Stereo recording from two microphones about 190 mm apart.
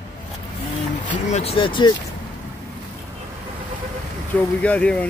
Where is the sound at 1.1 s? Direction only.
35° left (ahead or behind).